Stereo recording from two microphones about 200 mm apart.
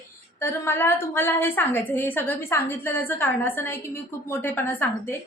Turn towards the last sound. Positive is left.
turn(degrees=10)  # may be behind; listen again after turning